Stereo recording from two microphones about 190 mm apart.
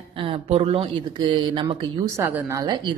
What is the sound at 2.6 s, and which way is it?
Speech, 25° right (ahead or behind).